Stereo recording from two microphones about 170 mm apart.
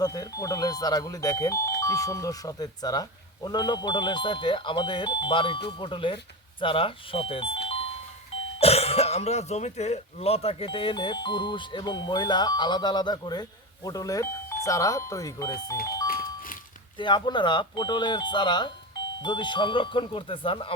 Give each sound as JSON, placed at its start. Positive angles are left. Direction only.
{"t": 0.0, "sound": "speech", "side_deg": 20}
{"t": 17.0, "sound": "speech", "side_deg": 25}